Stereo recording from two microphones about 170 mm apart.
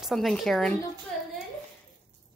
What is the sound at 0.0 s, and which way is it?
Speech, centre (ahead or behind).